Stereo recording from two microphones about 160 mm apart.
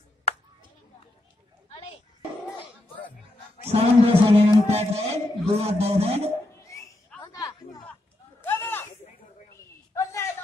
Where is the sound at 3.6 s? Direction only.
40° right (ahead or behind).